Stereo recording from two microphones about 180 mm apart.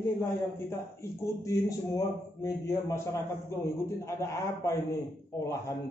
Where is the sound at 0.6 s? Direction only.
15° left (ahead or behind).